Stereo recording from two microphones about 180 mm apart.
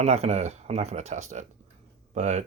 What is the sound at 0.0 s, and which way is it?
Speech, 35° right (ahead or behind).